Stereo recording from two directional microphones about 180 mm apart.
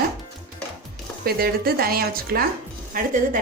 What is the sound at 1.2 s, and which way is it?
A woman's voice, 55° right (ahead or behind).